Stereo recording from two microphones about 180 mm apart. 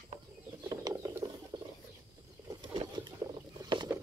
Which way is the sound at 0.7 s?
20° right (ahead or behind).